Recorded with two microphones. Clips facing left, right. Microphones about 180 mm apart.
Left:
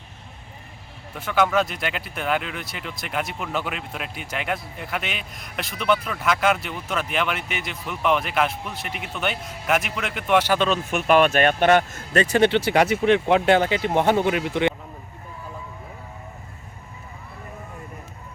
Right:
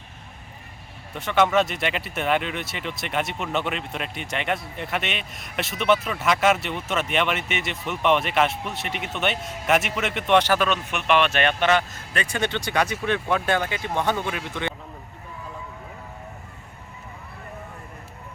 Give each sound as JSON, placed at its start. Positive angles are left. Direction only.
{"t": 1.1, "sound": "speech", "side_deg": 0}
{"t": 10.9, "sound": "speech", "side_deg": 40}
{"t": 12.4, "sound": "a man's voice", "side_deg": 30}